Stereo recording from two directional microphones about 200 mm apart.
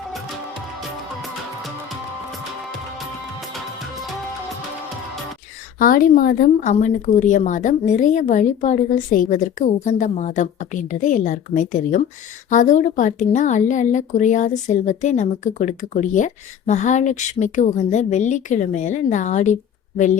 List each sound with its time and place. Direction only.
0.8 s music: centre (ahead or behind)
5.8 s a woman's voice: 45° left (ahead or behind)